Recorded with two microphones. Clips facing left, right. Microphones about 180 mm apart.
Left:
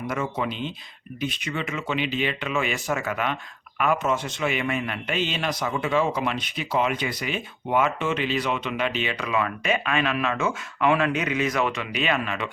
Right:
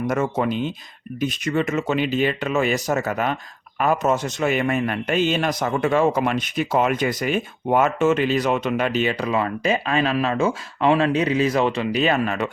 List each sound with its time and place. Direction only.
0.1 s a man's voice: 45° right (ahead or behind)